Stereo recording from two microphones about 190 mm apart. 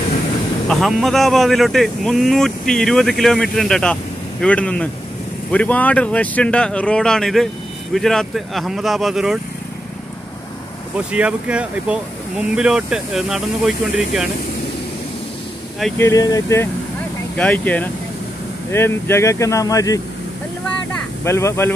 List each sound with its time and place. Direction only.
0.7 s speech: centre (ahead or behind)
11.1 s speech: 5° right (ahead or behind)
16.0 s speech: 15° left (ahead or behind)
21.2 s speech: 15° left (ahead or behind)